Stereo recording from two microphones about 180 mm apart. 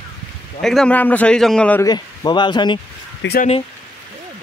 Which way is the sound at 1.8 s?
20° left (ahead or behind).